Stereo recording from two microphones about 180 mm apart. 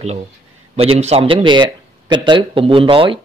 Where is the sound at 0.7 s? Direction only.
35° right (ahead or behind).